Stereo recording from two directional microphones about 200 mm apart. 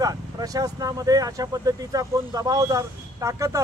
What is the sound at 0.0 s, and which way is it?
Speech, 15° right (ahead or behind).